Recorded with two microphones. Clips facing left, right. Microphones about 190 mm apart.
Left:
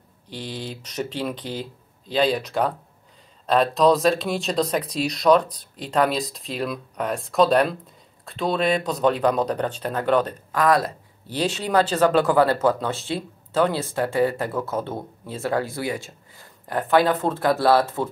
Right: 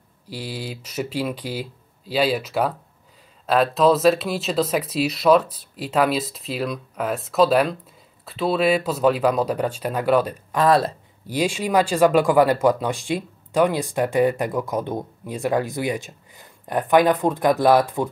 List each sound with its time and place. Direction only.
0.3 s speech: 10° right (ahead or behind)
10.5 s speech: 30° right (ahead or behind)
11.2 s speech: 10° right (ahead or behind)